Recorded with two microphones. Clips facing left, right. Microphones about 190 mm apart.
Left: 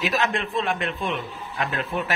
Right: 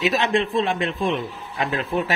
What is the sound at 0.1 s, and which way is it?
A man's voice, 30° right (ahead or behind).